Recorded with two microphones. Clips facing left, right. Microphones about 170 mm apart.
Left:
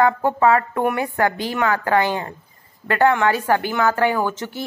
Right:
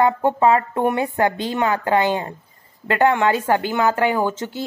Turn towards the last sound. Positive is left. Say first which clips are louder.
# right 1 dB
turn(degrees=-20)  # may be behind; listen again after turning